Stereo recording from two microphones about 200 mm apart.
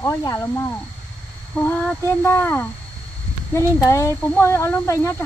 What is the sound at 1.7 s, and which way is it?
Speech, 10° left (ahead or behind).